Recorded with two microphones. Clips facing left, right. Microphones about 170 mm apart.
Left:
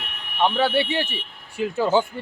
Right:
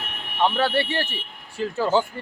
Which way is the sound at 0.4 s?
Centre (ahead or behind).